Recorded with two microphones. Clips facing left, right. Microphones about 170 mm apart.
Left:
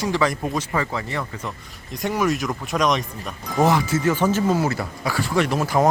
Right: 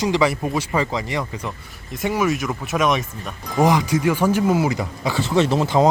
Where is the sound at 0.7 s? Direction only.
15° right (ahead or behind).